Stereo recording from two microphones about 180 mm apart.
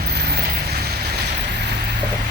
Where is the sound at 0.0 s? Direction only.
65° right (ahead or behind).